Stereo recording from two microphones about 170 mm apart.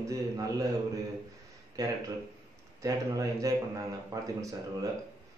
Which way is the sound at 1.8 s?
20° right (ahead or behind).